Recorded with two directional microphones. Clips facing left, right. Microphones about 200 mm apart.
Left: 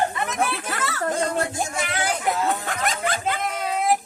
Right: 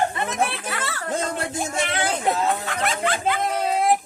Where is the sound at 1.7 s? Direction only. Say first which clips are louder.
Right 2 dB; 25° right (ahead or behind).